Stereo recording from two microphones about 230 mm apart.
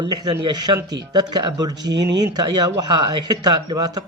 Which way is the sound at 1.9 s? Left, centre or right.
Right.